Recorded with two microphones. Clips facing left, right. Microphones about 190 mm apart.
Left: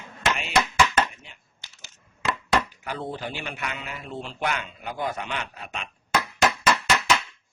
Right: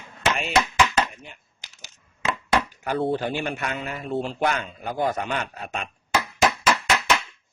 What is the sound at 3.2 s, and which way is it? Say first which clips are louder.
A man's voice: right 6 dB; 50° right (ahead or behind).